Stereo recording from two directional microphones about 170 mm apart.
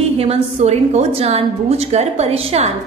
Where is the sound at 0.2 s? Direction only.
40° right (ahead or behind).